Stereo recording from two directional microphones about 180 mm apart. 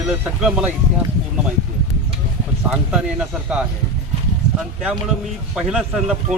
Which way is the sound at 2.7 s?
5° right (ahead or behind).